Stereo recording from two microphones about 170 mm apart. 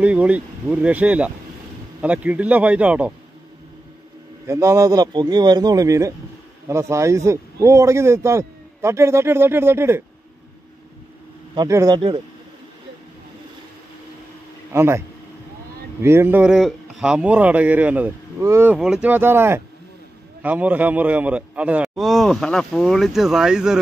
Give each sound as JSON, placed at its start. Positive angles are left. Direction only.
{"t": 0.0, "sound": "speech", "side_deg": -10}
{"t": 4.5, "sound": "speech", "side_deg": -20}
{"t": 11.5, "sound": "speech", "side_deg": -20}
{"t": 14.7, "sound": "a man's voice", "side_deg": -15}